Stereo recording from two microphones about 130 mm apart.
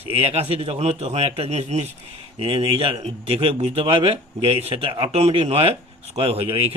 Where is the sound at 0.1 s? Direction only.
50° right (ahead or behind).